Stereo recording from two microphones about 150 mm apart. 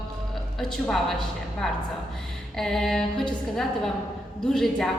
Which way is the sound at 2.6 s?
Centre (ahead or behind).